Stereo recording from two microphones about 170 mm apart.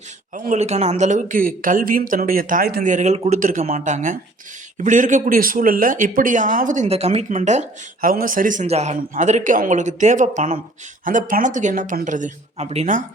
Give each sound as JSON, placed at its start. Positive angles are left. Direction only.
{"t": 0.3, "sound": "speech", "side_deg": -45}
{"t": 2.8, "sound": "speech", "side_deg": -45}
{"t": 8.1, "sound": "speech", "side_deg": -55}